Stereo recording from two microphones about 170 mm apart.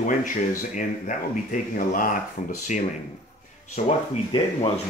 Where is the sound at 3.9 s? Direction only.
30° left (ahead or behind).